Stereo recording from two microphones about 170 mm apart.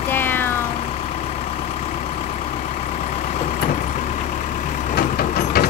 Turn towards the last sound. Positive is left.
turn(degrees=60)  # may be behind; listen again after turning